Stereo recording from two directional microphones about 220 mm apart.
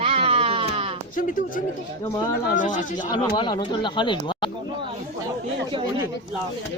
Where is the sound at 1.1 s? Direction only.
35° left (ahead or behind).